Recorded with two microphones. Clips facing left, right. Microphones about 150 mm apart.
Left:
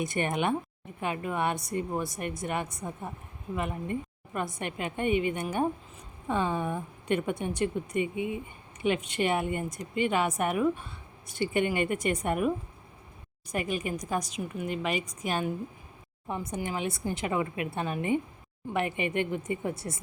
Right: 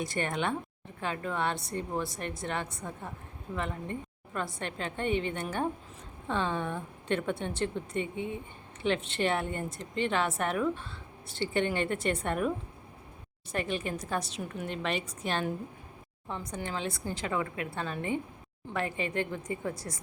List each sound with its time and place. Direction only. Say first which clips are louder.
0.0 s a woman's voice: left 3 dB; 20° left (ahead or behind)
16.6 s a woman's voice: left 2 dB; 15° left (ahead or behind)